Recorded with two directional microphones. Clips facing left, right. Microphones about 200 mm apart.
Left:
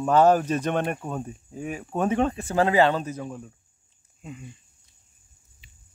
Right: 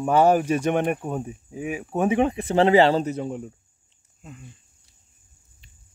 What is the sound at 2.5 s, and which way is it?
Speech, 25° right (ahead or behind).